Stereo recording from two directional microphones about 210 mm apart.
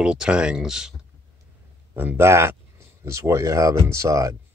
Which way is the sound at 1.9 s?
10° right (ahead or behind).